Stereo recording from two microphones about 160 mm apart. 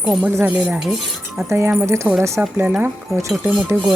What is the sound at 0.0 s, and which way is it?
Speech, 5° right (ahead or behind).